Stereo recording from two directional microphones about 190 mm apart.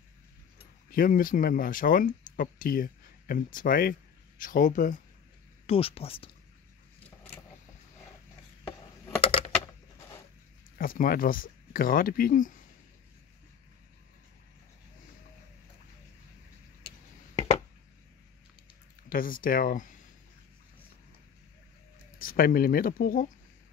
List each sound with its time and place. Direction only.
0.9 s speech: 50° left (ahead or behind)
5.7 s speech: 30° left (ahead or behind)
8.6 s a sound: 15° left (ahead or behind)
9.2 s a sound: 30° left (ahead or behind)
10.8 s speech: 45° left (ahead or behind)
19.0 s speech: 45° left (ahead or behind)
22.2 s speech: 50° left (ahead or behind)